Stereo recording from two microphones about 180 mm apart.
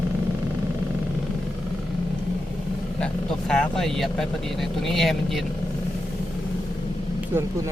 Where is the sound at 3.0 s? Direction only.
5° left (ahead or behind).